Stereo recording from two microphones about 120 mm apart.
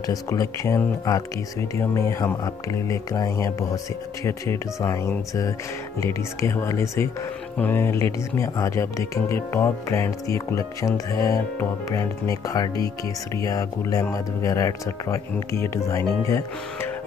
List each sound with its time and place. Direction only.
0.0 s speech: 30° left (ahead or behind)